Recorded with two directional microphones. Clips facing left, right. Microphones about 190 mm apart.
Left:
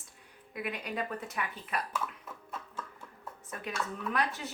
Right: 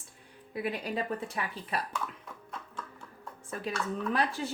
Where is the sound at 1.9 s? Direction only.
5° left (ahead or behind).